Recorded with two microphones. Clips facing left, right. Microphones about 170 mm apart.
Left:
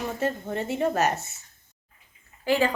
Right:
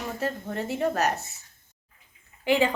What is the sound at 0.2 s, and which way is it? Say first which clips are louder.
A woman's voice: left 1 dB; centre (ahead or behind).